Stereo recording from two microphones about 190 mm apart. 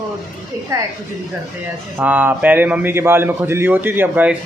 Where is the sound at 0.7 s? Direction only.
15° right (ahead or behind).